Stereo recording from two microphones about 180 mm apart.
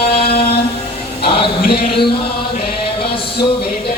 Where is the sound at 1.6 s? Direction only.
60° left (ahead or behind).